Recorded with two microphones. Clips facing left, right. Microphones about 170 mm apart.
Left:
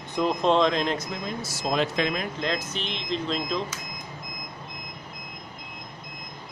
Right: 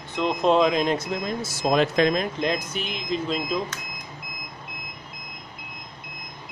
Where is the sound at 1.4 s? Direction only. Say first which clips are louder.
Right 5 dB; 55° right (ahead or behind).